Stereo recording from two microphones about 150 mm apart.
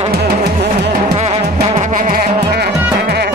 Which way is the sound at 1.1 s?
40° right (ahead or behind).